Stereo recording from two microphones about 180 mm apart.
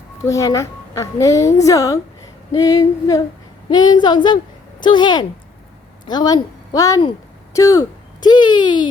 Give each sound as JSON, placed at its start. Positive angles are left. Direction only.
{"t": 0.3, "sound": "a woman's voice", "side_deg": 15}